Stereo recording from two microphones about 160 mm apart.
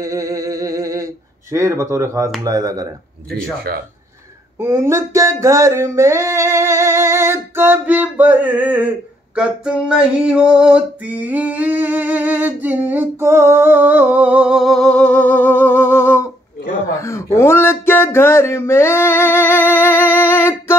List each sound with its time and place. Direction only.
0.0 s humming: 20° right (ahead or behind)
2.4 s speech: 25° right (ahead or behind)
3.5 s a man's voice: 75° right (ahead or behind)
4.6 s a sound: 15° right (ahead or behind); by 16.3 s 15° left (ahead or behind)
16.9 s speech: 20° left (ahead or behind)